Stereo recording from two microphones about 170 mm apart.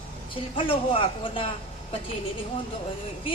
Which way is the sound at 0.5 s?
30° left (ahead or behind).